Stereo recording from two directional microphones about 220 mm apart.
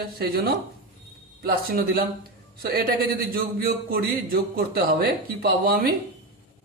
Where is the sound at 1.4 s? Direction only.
40° right (ahead or behind).